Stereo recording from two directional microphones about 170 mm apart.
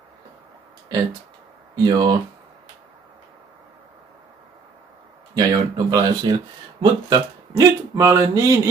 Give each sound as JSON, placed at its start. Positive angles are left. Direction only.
{"t": 0.9, "sound": "speech", "side_deg": -20}
{"t": 5.3, "sound": "speech", "side_deg": -20}